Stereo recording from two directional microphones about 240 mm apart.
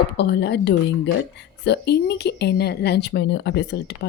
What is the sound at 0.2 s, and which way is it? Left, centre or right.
A woman's voice, left.